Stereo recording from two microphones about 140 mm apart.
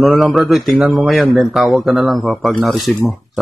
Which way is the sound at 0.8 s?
10° right (ahead or behind).